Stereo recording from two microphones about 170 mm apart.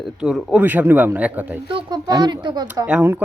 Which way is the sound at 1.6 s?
25° right (ahead or behind).